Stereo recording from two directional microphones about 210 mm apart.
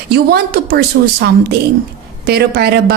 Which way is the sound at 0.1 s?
50° right (ahead or behind).